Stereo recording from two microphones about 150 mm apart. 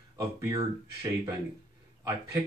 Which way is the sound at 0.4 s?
20° right (ahead or behind).